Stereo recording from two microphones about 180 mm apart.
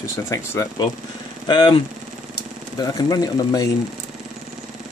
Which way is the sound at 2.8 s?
20° left (ahead or behind).